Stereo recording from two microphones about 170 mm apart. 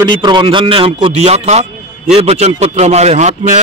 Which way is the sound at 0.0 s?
25° right (ahead or behind).